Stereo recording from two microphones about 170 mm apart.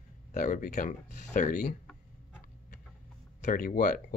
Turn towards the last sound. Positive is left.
turn(degrees=50)  # may be behind; listen again after turning